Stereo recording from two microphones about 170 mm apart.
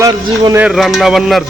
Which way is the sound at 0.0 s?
20° right (ahead or behind).